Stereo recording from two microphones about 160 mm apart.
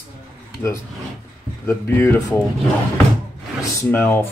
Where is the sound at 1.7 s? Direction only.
15° left (ahead or behind).